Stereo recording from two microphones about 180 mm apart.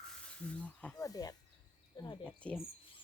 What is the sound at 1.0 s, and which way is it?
Speech, 20° left (ahead or behind).